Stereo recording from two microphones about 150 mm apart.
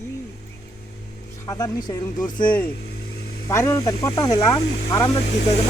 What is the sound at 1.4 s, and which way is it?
Speech, 25° left (ahead or behind).